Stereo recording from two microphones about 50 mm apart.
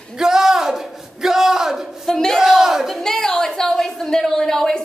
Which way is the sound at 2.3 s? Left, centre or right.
Centre.